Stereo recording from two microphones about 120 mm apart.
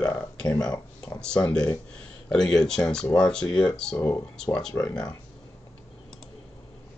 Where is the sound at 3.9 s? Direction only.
20° left (ahead or behind).